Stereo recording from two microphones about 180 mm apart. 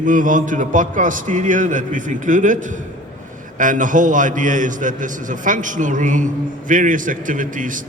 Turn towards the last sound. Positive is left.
turn(degrees=-45)  # may be behind; listen again after turning